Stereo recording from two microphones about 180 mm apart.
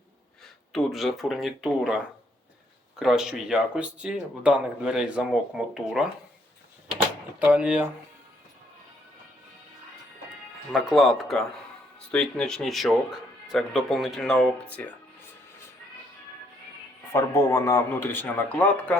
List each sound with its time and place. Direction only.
0.7 s speech: centre (ahead or behind)
7.4 s speech: 5° right (ahead or behind)
10.7 s speech: centre (ahead or behind)
17.1 s a man's voice: 15° left (ahead or behind)